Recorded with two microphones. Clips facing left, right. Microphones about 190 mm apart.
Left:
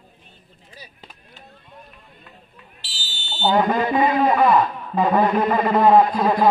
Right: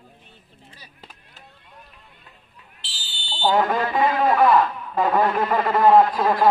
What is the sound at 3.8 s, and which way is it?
A man's voice, 10° left (ahead or behind).